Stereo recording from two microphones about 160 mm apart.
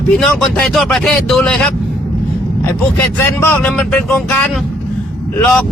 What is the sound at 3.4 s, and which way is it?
Speech, 10° left (ahead or behind).